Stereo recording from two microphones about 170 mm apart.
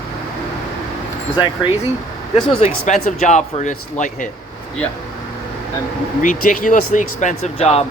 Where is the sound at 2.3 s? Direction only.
35° left (ahead or behind).